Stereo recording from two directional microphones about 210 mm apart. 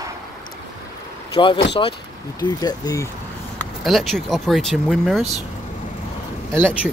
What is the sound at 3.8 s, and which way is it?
Speech, centre (ahead or behind).